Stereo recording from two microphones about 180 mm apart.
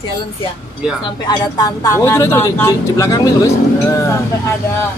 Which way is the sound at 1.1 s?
25° left (ahead or behind).